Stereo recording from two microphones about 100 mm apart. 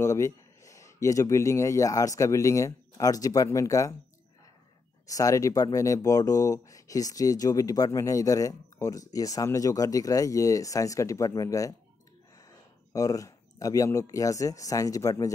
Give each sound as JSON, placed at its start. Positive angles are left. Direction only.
{"t": 0.0, "sound": "speech", "side_deg": 35}
{"t": 5.0, "sound": "speech", "side_deg": 35}
{"t": 12.9, "sound": "speech", "side_deg": 35}